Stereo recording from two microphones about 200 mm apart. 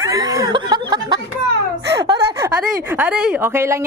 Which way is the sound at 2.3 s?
10° right (ahead or behind).